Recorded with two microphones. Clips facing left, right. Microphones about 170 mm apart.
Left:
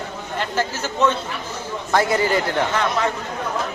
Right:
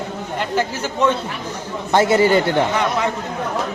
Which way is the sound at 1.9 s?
25° right (ahead or behind).